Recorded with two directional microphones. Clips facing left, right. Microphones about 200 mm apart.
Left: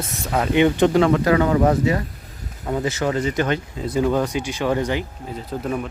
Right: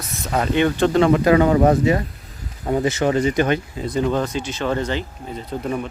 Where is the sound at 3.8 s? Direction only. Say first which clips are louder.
Left 1 dB; 5° left (ahead or behind).